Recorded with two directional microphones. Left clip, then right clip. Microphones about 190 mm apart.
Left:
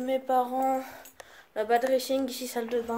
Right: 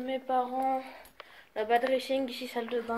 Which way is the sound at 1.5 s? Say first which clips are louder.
Left 2 dB; 15° left (ahead or behind).